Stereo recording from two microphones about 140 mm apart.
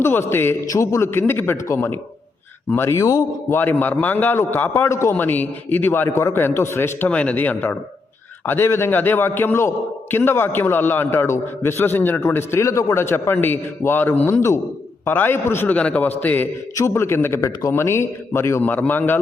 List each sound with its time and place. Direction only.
0.0 s a man's voice: 15° left (ahead or behind)